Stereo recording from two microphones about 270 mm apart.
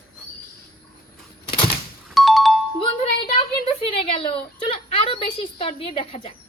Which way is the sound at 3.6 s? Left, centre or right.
Left.